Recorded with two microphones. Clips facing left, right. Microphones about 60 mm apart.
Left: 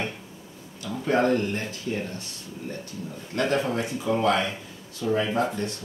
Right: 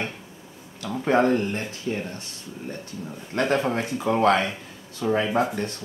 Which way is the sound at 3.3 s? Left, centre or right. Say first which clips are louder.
Right 2 dB; right.